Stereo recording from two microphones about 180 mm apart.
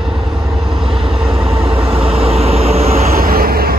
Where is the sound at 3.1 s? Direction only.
55° right (ahead or behind).